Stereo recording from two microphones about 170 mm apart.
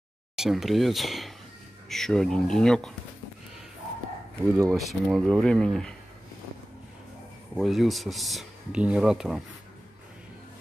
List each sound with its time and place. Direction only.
0.4 s speech: centre (ahead or behind)
4.4 s speech: 15° right (ahead or behind)
4.7 s speech: centre (ahead or behind)
7.5 s speech: centre (ahead or behind)